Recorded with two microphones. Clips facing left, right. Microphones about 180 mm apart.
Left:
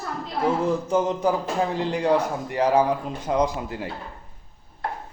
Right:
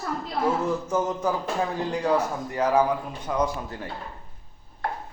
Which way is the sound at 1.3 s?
20° left (ahead or behind).